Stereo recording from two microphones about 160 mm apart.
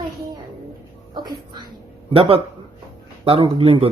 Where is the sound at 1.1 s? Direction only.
25° right (ahead or behind).